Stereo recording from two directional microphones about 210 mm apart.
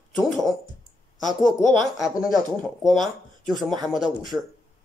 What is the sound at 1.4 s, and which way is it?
Speech, centre (ahead or behind).